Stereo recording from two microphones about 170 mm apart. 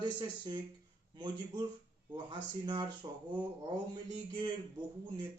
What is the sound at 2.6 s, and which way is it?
Speech, 25° right (ahead or behind).